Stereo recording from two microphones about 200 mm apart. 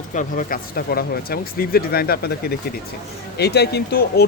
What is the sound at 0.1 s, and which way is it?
Speech, 40° left (ahead or behind).